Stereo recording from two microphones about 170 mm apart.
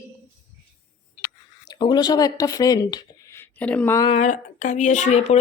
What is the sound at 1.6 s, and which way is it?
Speech, 25° left (ahead or behind).